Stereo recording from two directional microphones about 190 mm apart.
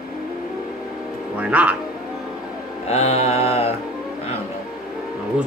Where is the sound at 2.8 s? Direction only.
35° left (ahead or behind).